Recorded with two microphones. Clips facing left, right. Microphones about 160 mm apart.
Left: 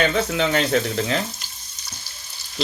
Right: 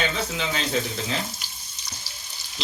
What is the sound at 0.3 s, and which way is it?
Speech, 60° left (ahead or behind).